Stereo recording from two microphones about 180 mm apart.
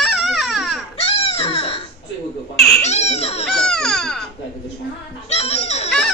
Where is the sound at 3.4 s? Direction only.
5° left (ahead or behind).